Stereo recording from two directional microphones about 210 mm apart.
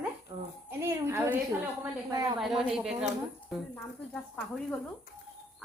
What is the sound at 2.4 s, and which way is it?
Speech, centre (ahead or behind).